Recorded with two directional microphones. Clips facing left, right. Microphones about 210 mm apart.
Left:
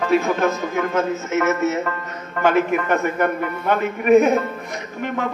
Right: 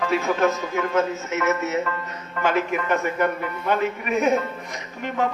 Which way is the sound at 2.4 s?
50° left (ahead or behind).